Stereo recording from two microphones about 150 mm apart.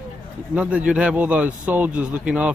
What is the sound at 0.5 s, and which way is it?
Speech, 10° right (ahead or behind).